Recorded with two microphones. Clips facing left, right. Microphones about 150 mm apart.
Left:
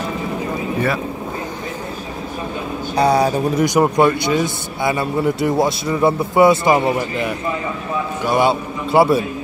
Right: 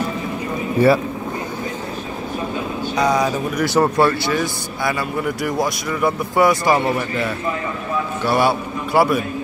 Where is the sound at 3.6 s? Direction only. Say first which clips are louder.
Left 1 dB; 15° left (ahead or behind).